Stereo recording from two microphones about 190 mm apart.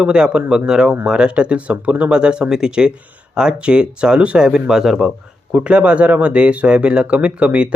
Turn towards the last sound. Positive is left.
turn(degrees=-5)  # may be behind; listen again after turning